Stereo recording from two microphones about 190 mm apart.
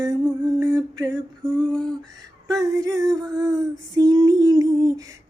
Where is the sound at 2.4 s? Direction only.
20° right (ahead or behind).